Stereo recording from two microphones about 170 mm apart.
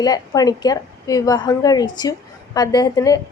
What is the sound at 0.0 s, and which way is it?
A woman's voice, 20° left (ahead or behind).